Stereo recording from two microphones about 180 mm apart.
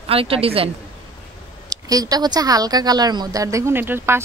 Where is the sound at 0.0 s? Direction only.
30° right (ahead or behind).